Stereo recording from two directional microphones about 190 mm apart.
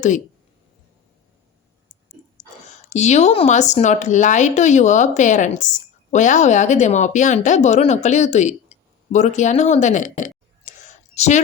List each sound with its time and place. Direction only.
2.9 s speech: 35° left (ahead or behind)